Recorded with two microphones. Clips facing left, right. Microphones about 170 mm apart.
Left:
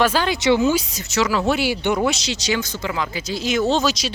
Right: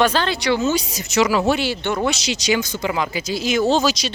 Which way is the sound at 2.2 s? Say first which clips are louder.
Right 3 dB; 15° right (ahead or behind).